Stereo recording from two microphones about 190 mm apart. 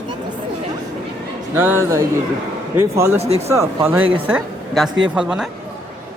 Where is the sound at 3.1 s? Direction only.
35° right (ahead or behind).